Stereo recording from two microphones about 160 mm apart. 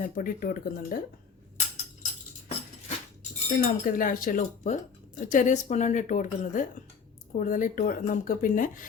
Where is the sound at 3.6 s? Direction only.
60° left (ahead or behind).